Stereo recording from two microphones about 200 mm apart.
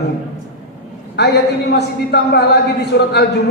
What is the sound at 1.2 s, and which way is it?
Speech, 55° left (ahead or behind).